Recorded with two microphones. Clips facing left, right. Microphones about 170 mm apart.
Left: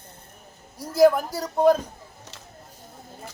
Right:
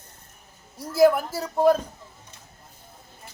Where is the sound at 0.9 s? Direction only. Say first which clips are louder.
Left 1 dB; 5° right (ahead or behind).